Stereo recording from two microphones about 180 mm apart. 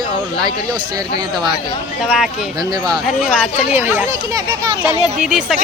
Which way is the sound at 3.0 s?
Centre (ahead or behind).